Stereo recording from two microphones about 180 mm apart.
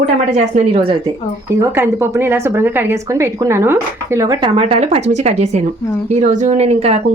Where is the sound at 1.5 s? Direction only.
15° right (ahead or behind).